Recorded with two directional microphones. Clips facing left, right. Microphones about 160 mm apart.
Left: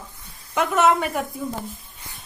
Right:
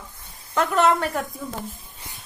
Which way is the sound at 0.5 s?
5° left (ahead or behind).